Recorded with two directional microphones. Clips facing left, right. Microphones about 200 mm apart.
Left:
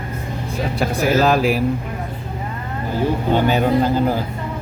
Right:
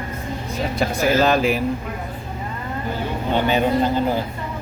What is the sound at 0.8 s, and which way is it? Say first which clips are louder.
Speech: left 1 dB; centre (ahead or behind).